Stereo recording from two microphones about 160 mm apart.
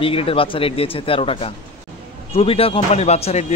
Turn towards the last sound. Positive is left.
turn(degrees=40)  # may be behind; listen again after turning